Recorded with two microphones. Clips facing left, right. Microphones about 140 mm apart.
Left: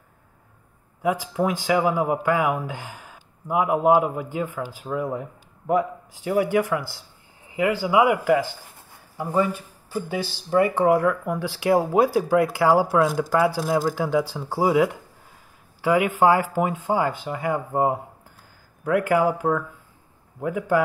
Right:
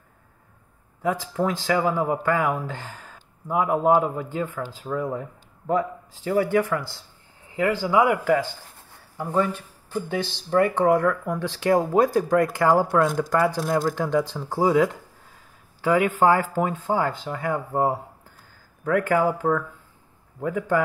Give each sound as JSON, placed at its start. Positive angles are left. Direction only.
{"t": 1.0, "sound": "speech", "side_deg": 10}